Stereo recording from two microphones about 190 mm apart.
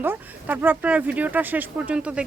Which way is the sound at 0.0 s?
10° right (ahead or behind).